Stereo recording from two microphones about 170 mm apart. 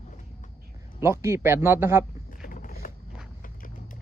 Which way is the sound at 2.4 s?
55° left (ahead or behind).